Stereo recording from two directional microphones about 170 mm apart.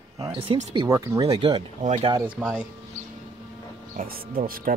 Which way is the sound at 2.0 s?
30° right (ahead or behind).